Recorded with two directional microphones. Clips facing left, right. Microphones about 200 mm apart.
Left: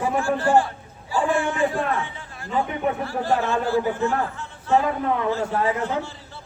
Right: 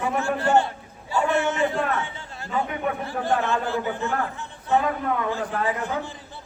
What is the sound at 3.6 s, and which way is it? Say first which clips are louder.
Speech: left 5 dB; 20° right (ahead or behind).